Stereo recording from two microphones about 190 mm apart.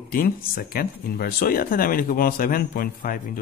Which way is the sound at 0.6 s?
50° left (ahead or behind).